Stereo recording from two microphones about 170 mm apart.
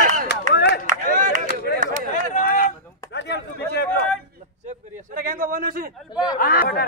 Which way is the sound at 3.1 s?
85° left.